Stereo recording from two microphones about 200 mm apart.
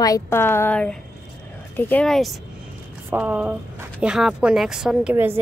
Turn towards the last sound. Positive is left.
turn(degrees=-10)  # may be behind; listen again after turning